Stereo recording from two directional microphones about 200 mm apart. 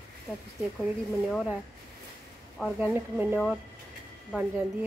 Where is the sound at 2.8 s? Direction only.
10° right (ahead or behind).